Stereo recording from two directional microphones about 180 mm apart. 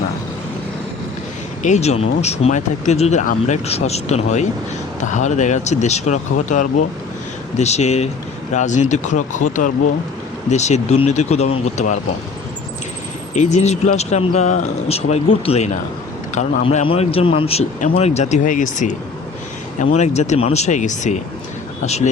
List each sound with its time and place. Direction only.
1.6 s speech: 40° left (ahead or behind)
13.3 s speech: 40° left (ahead or behind)